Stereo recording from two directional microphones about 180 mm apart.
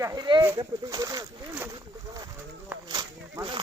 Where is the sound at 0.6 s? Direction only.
20° right (ahead or behind).